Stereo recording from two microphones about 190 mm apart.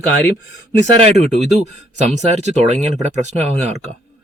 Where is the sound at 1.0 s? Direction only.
35° right (ahead or behind).